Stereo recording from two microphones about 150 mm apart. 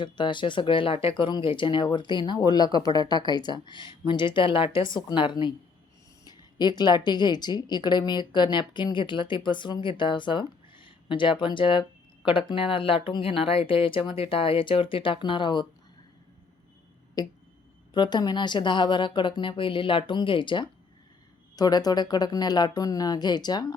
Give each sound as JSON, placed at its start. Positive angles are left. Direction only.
{"t": 0.0, "sound": "a woman's voice", "side_deg": 30}
{"t": 17.2, "sound": "a woman's voice", "side_deg": 25}